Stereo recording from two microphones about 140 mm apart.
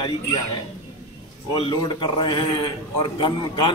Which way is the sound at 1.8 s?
35° left (ahead or behind).